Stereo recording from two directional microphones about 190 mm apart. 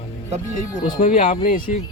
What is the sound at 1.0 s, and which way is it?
Speech, 45° left (ahead or behind).